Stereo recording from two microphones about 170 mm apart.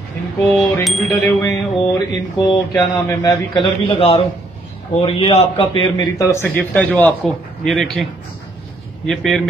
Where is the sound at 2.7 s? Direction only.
20° left (ahead or behind).